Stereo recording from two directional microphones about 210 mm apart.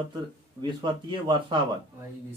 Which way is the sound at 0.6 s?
20° right (ahead or behind).